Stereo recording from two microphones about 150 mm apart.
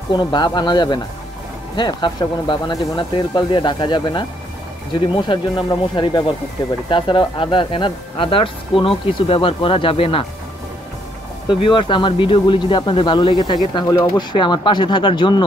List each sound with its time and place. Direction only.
0.1 s speech: 30° left (ahead or behind)
11.4 s speech: 35° left (ahead or behind)